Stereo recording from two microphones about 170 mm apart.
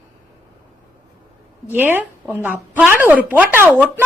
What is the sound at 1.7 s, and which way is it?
A woman's voice, 10° right (ahead or behind).